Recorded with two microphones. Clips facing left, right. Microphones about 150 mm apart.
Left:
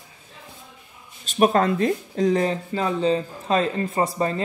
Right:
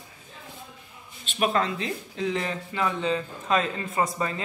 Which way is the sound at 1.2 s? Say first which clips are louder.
Left 7 dB; 40° left (ahead or behind).